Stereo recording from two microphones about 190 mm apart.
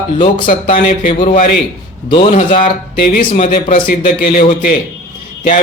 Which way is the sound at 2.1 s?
30° left (ahead or behind).